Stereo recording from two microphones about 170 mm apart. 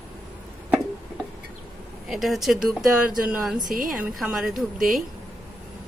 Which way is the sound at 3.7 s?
50° right (ahead or behind).